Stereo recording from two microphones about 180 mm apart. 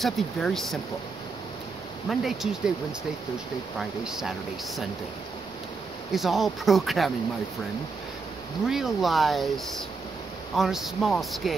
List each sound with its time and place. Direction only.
0.0 s speech: centre (ahead or behind)
2.0 s speech: centre (ahead or behind)
4.0 s speech: centre (ahead or behind)
6.1 s speech: centre (ahead or behind)
8.6 s speech: centre (ahead or behind)